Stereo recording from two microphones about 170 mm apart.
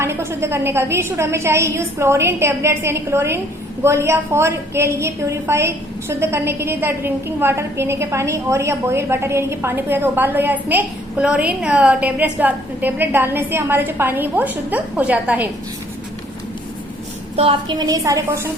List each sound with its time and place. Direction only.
0.0 s a woman's voice: 15° right (ahead or behind)
17.3 s a woman's voice: 30° right (ahead or behind)